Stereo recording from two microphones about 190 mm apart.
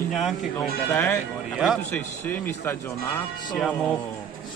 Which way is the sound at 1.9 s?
10° left (ahead or behind).